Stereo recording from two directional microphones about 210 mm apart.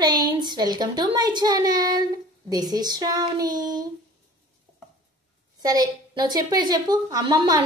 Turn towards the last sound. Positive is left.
turn(degrees=-20)  # may be behind; listen again after turning